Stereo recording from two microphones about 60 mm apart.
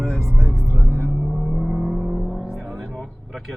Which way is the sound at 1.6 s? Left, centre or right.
Centre.